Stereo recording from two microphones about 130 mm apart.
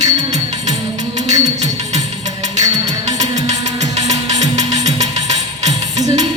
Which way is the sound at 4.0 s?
60° right (ahead or behind).